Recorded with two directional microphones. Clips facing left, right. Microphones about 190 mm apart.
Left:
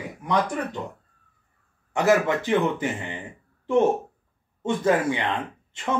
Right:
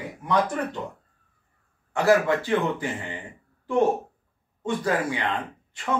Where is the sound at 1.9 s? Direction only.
20° left (ahead or behind).